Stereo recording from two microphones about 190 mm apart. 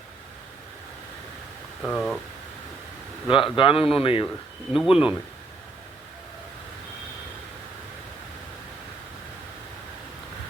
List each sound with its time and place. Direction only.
1.8 s speech: 5° left (ahead or behind)
3.2 s a man's voice: 25° left (ahead or behind)
4.7 s speech: centre (ahead or behind)